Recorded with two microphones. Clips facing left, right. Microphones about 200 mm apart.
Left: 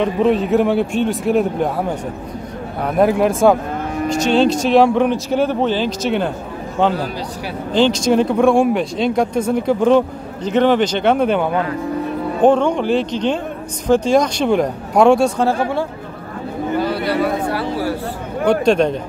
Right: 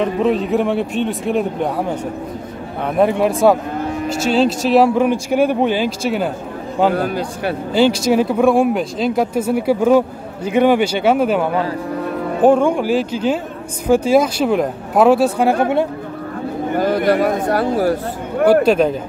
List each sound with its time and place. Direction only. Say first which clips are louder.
0.0 s a man's voice: left 1 dB; centre (ahead or behind)
7.0 s speech: right 4 dB; 55° right (ahead or behind)
7.7 s a man's voice: even; 10° right (ahead or behind)
15.6 s speech: right 4 dB; 20° right (ahead or behind)
16.7 s speech: right 4 dB; 45° right (ahead or behind)
18.4 s a man's voice: right 2 dB; 5° right (ahead or behind)